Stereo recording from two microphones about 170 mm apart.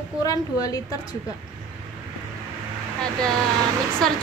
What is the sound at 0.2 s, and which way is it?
Speech, 20° left (ahead or behind).